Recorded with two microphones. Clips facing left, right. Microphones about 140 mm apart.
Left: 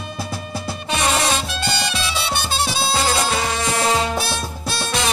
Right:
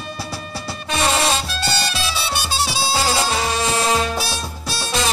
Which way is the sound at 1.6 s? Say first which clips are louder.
Even; 20° left (ahead or behind).